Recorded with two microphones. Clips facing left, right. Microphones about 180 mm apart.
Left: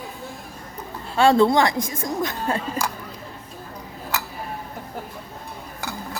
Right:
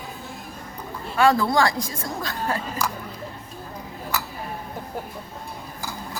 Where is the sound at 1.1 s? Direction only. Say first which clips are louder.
Left 3 dB; 25° left (ahead or behind).